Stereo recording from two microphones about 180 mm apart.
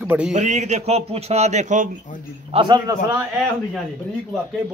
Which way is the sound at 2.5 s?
25° right (ahead or behind).